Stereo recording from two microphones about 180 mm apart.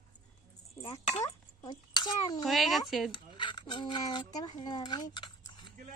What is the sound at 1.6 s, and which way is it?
Speech, 25° left (ahead or behind).